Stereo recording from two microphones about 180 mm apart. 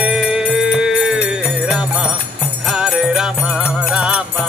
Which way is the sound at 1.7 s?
5° right (ahead or behind).